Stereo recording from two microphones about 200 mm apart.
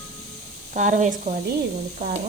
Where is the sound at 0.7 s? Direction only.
40° right (ahead or behind).